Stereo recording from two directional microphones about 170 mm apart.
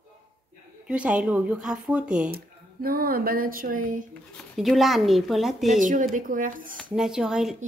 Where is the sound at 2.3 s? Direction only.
60° right (ahead or behind).